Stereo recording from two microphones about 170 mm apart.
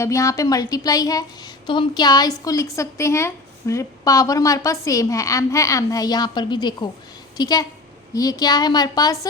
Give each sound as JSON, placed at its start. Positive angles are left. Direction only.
{"t": 0.0, "sound": "a woman's voice", "side_deg": 20}